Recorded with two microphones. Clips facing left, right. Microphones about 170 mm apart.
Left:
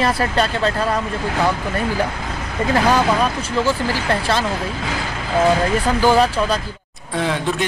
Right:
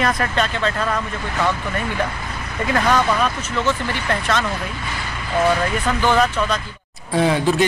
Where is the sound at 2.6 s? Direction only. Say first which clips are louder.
Left 2 dB; 30° left (ahead or behind).